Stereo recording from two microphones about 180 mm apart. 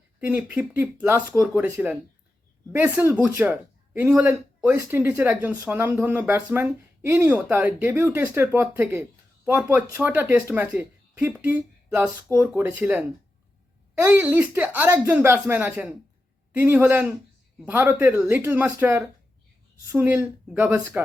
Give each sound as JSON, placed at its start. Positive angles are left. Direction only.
{"t": 0.2, "sound": "a man's voice", "side_deg": -10}